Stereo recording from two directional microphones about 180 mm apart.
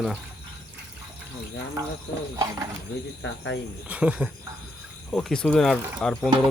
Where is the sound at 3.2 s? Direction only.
80° left.